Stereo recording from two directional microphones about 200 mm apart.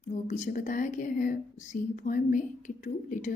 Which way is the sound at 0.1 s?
40° left (ahead or behind).